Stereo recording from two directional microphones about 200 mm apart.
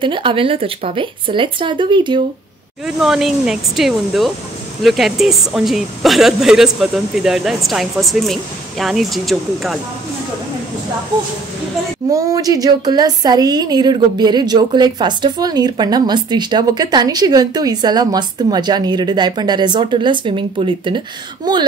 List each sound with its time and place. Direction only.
0.0 s a woman's voice: 25° right (ahead or behind)
3.0 s speech: centre (ahead or behind)
12.1 s a woman's voice: 15° right (ahead or behind)